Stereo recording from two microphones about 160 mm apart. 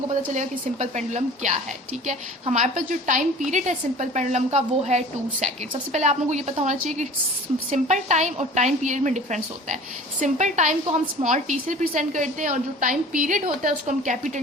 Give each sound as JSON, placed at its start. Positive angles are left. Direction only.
{"t": 0.3, "sound": "a woman's voice", "side_deg": -45}